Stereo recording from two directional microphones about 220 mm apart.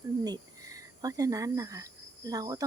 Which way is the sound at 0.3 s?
15° right (ahead or behind).